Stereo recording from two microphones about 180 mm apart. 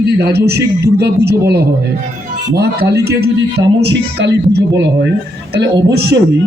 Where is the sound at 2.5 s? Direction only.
65° right (ahead or behind).